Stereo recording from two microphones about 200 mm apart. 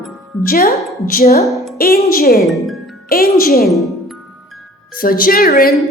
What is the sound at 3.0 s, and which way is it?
Speech, 50° left (ahead or behind).